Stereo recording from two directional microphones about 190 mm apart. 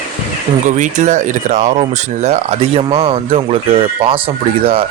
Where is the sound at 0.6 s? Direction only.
40° right (ahead or behind).